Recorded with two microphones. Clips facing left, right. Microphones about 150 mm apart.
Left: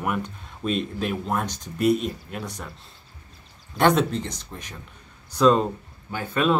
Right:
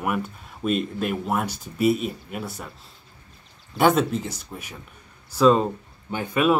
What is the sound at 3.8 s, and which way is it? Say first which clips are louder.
Speech: right 1 dB; 5° right (ahead or behind).